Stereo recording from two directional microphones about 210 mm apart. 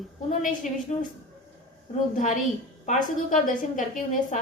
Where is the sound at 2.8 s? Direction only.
35° left (ahead or behind).